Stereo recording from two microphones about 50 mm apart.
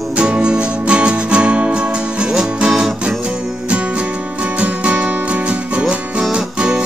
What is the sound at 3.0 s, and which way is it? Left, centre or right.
Music, right.